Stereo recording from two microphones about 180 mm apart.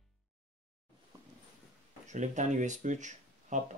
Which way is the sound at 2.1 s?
40° right (ahead or behind).